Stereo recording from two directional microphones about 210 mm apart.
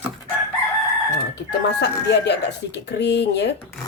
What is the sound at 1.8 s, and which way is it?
Speech, 50° left (ahead or behind).